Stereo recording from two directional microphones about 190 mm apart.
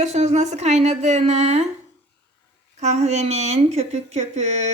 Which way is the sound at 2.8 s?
35° right (ahead or behind).